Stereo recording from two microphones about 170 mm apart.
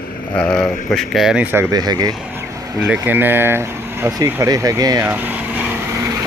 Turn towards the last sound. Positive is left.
turn(degrees=-10)  # may be behind; listen again after turning